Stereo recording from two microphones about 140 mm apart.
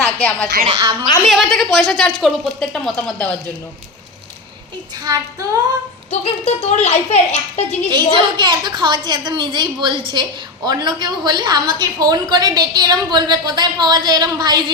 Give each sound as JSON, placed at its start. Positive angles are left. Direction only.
{"t": 0.0, "sound": "music", "side_deg": 10}
{"t": 1.3, "sound": "a woman's voice", "side_deg": 0}
{"t": 5.0, "sound": "a woman's voice", "side_deg": -25}
{"t": 6.1, "sound": "a woman's voice", "side_deg": 45}
{"t": 7.9, "sound": "a woman's voice", "side_deg": -35}